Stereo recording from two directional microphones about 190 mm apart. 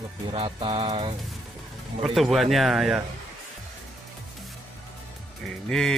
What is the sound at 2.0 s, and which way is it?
Speech, centre (ahead or behind).